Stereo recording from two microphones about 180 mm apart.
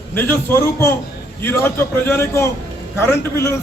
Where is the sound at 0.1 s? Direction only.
10° left (ahead or behind).